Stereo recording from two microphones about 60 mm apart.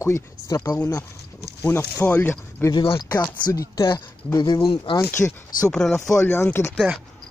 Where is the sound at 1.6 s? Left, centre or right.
Left.